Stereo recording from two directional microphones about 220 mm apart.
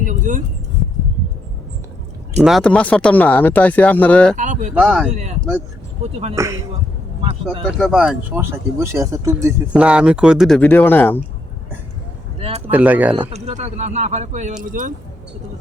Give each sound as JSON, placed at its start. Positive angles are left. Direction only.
{"t": 0.0, "sound": "a sound", "side_deg": -35}
{"t": 2.4, "sound": "speech", "side_deg": 0}
{"t": 4.4, "sound": "speech", "side_deg": -35}
{"t": 4.7, "sound": "speech", "side_deg": -5}
{"t": 5.1, "sound": "speech", "side_deg": -30}
{"t": 6.3, "sound": "speech", "side_deg": -15}
{"t": 7.6, "sound": "speech", "side_deg": 0}
{"t": 12.4, "sound": "speech", "side_deg": -25}
{"t": 12.7, "sound": "speech", "side_deg": -5}
{"t": 13.1, "sound": "speech", "side_deg": -30}